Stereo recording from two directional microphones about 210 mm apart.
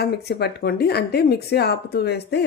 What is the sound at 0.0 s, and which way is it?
Speech, 50° left (ahead or behind).